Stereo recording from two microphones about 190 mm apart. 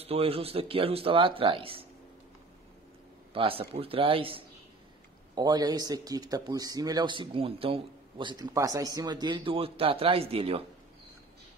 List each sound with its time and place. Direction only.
0.0 s a man's voice: 30° right (ahead or behind)
3.3 s a man's voice: 30° right (ahead or behind)